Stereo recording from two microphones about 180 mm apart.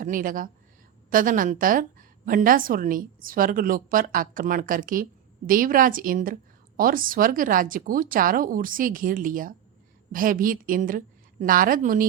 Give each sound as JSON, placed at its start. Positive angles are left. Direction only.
{"t": 0.0, "sound": "a woman's voice", "side_deg": -50}